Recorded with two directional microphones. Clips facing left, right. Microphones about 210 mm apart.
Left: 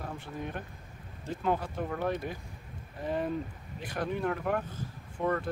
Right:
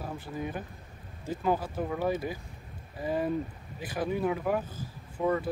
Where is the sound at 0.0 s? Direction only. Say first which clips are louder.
Right 3 dB; 5° right (ahead or behind).